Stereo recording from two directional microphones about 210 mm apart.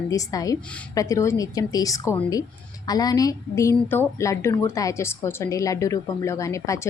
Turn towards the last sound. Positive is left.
turn(degrees=15)  # may be behind; listen again after turning